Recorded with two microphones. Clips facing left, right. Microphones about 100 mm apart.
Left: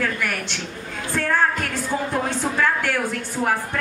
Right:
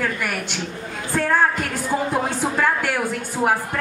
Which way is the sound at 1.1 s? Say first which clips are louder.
Right 2 dB; 10° right (ahead or behind).